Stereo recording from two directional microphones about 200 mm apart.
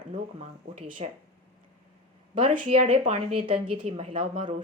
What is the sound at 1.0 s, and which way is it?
Speech, 30° right (ahead or behind).